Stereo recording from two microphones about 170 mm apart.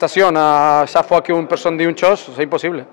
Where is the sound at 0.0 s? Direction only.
15° left (ahead or behind).